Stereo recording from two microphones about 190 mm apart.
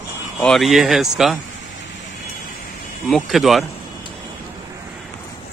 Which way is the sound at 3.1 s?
Centre (ahead or behind).